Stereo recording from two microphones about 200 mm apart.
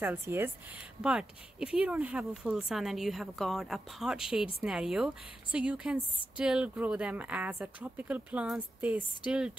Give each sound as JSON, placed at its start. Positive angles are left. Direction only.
{"t": 0.0, "sound": "speech", "side_deg": -10}